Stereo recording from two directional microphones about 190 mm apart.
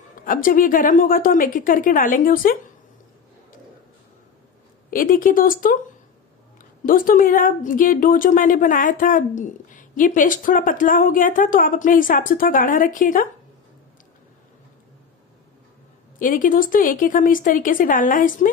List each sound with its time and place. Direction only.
0.2 s a woman's voice: 45° left (ahead or behind)
4.9 s a woman's voice: 45° left (ahead or behind)
6.9 s a woman's voice: 45° left (ahead or behind)
16.2 s a woman's voice: 45° left (ahead or behind)